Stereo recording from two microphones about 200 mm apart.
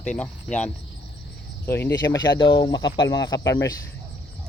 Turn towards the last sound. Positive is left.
turn(degrees=15)  # may be behind; listen again after turning